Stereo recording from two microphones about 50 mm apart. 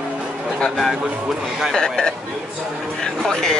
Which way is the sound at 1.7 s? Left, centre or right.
Centre.